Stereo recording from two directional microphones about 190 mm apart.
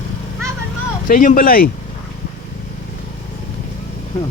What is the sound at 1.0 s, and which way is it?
Speech, 45° left (ahead or behind).